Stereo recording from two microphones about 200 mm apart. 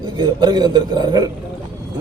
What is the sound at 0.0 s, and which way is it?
Speech, 20° right (ahead or behind).